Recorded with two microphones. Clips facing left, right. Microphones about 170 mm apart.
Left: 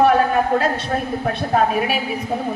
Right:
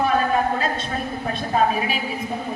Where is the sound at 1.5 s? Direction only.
65° left (ahead or behind).